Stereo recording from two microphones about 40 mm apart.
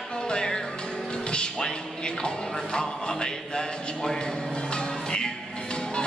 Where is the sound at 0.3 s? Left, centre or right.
Centre.